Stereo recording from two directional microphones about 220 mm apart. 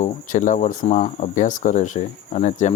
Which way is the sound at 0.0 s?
35° left (ahead or behind).